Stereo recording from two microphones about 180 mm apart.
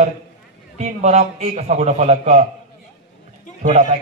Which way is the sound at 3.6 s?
40° right (ahead or behind).